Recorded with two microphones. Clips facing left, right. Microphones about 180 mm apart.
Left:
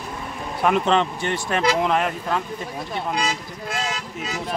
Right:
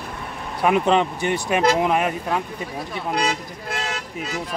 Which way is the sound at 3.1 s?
60° right (ahead or behind).